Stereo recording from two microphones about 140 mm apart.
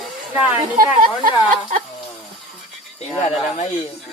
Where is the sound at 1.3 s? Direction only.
70° right (ahead or behind).